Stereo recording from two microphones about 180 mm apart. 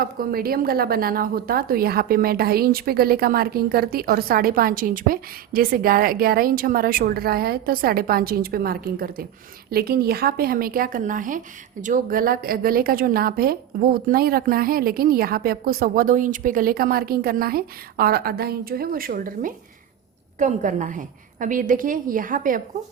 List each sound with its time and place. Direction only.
0.0 s a woman's voice: 55° right (ahead or behind)